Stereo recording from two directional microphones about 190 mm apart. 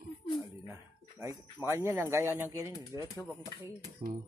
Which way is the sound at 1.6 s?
10° right (ahead or behind).